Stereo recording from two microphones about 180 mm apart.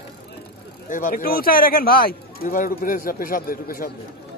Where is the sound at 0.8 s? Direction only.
45° left (ahead or behind).